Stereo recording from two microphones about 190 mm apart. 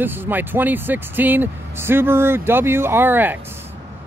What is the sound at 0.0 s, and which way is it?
Speech, 10° right (ahead or behind).